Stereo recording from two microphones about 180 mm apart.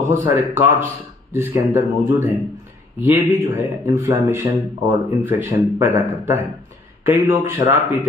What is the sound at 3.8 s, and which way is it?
Speech, 15° right (ahead or behind).